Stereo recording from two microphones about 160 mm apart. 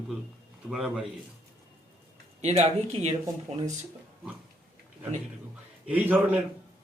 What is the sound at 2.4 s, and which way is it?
Speech, 45° right (ahead or behind).